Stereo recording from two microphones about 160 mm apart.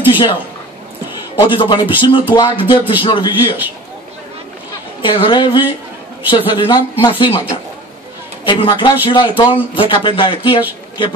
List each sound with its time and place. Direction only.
0.0 s speech: 30° left (ahead or behind)
1.5 s a woman's voice: 30° left (ahead or behind)
5.0 s a woman's voice: 30° left (ahead or behind)